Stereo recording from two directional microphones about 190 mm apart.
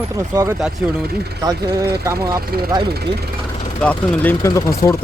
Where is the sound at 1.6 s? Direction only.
55° right (ahead or behind).